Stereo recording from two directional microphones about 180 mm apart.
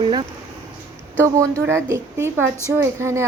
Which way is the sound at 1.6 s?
15° right (ahead or behind).